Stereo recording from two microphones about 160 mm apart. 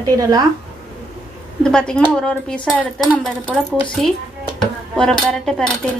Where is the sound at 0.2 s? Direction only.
20° right (ahead or behind).